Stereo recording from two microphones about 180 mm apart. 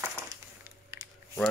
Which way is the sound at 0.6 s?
15° right (ahead or behind).